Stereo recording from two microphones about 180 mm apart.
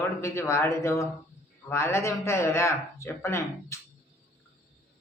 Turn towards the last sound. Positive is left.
turn(degrees=15)  # may be behind; listen again after turning